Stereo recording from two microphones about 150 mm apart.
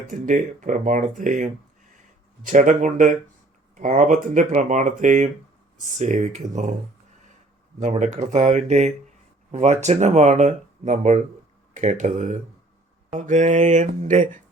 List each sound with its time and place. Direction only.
0.1 s speech: 60° right (ahead or behind)
7.8 s speech: 55° right (ahead or behind)